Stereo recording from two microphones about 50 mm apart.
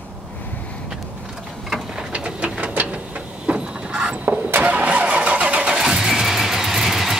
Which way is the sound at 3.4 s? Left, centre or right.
Centre.